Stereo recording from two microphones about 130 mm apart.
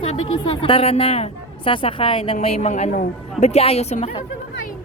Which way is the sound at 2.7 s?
75° left (ahead or behind).